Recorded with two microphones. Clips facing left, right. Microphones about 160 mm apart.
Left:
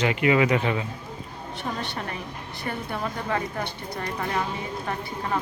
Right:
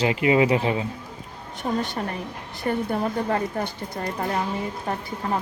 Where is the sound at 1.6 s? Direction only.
45° right (ahead or behind).